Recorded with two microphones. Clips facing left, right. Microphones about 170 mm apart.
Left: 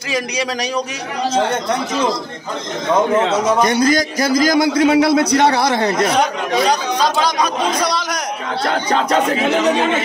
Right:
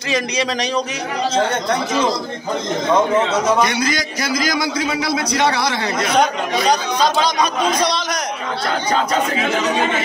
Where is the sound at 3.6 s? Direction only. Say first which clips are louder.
Left 6 dB; 40° left (ahead or behind).